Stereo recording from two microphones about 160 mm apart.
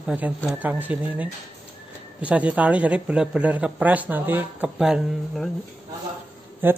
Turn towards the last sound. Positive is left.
turn(degrees=-15)  # may be behind; listen again after turning